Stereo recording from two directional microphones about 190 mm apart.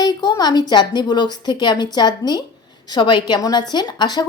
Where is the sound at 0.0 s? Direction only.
20° left (ahead or behind).